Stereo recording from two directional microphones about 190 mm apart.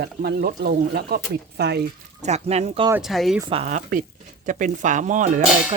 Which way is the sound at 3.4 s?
30° right (ahead or behind).